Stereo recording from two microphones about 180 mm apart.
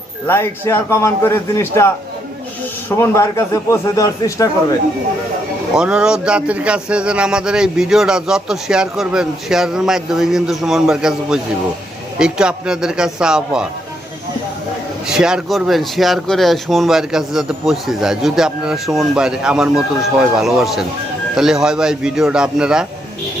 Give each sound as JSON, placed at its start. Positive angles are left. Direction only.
{"t": 0.3, "sound": "speech", "side_deg": 15}
{"t": 2.9, "sound": "speech", "side_deg": 15}
{"t": 5.7, "sound": "speech", "side_deg": -5}
{"t": 15.0, "sound": "speech", "side_deg": -5}